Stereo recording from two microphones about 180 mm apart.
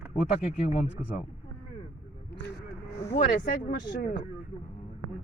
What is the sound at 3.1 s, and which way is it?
Speech, 50° left (ahead or behind).